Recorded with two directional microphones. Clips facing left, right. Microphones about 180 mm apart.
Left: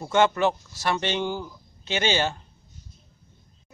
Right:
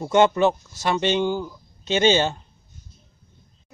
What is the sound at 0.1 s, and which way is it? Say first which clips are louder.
Speech: right 4 dB; 15° right (ahead or behind).